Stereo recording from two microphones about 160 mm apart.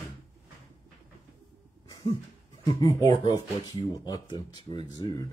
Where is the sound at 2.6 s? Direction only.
25° left (ahead or behind).